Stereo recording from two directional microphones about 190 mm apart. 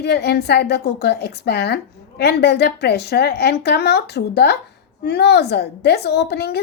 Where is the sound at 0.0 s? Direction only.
60° left (ahead or behind).